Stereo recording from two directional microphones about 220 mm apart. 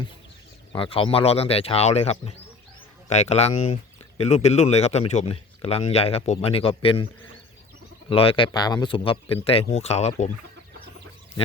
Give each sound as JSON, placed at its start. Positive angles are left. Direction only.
{"t": 0.7, "sound": "speech", "side_deg": 25}
{"t": 8.1, "sound": "speech", "side_deg": 25}